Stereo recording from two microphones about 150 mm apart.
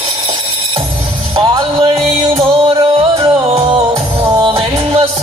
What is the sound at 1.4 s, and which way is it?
Music, 30° right (ahead or behind).